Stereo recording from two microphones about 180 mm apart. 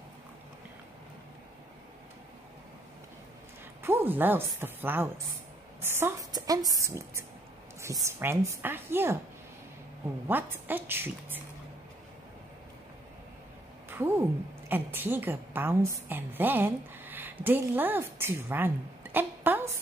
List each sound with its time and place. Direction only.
3.8 s a woman's voice: 10° right (ahead or behind)
10.2 s a woman's voice: 10° right (ahead or behind)
13.8 s a woman's voice: 10° right (ahead or behind)
19.1 s a sound: 10° right (ahead or behind)